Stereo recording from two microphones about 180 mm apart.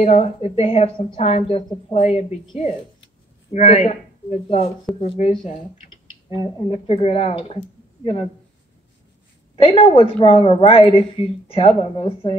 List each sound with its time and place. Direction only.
0.0 s a woman's voice: 35° left (ahead or behind)
3.5 s a woman's voice: 40° left (ahead or behind)
9.6 s a woman's voice: 30° left (ahead or behind)